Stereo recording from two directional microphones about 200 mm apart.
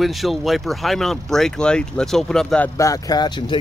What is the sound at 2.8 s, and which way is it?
Speech, 20° left (ahead or behind).